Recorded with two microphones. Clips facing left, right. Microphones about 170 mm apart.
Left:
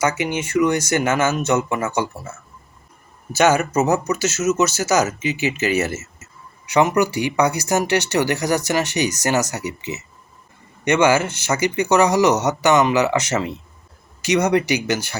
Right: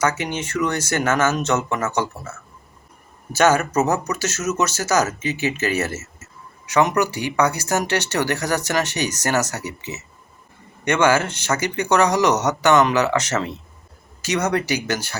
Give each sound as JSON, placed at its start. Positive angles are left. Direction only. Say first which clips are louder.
{"t": 0.0, "sound": "speech", "louder": "left 2 dB", "side_deg": 10}
{"t": 3.3, "sound": "speech", "louder": "left 1 dB", "side_deg": 10}
{"t": 5.2, "sound": "speech", "louder": "left 2 dB", "side_deg": -50}
{"t": 5.7, "sound": "speech", "louder": "left 3 dB", "side_deg": 10}